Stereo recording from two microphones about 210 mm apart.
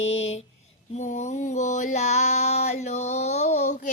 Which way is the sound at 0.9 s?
35° left (ahead or behind).